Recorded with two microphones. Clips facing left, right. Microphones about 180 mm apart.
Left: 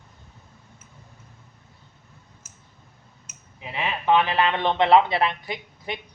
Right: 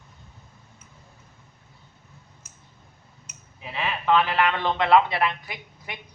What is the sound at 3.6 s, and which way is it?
A man's voice, 15° left (ahead or behind).